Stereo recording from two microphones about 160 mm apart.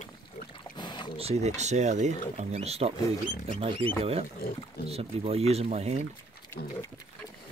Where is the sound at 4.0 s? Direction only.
40° right (ahead or behind).